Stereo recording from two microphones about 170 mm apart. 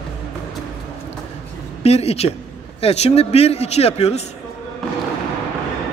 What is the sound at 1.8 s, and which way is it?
A man's voice, 40° left (ahead or behind).